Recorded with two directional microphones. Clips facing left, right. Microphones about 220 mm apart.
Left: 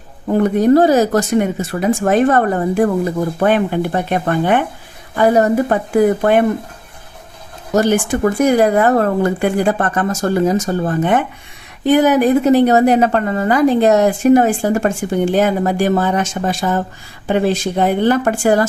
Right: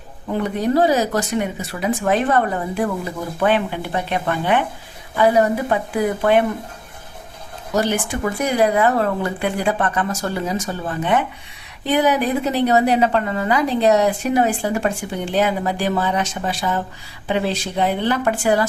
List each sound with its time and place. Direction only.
0.3 s a woman's voice: 45° left (ahead or behind)
7.7 s a woman's voice: 45° left (ahead or behind)